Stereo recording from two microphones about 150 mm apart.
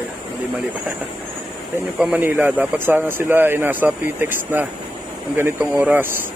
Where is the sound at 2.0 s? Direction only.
10° right (ahead or behind).